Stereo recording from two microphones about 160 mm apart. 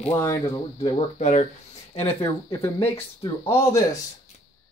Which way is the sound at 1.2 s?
45° left (ahead or behind).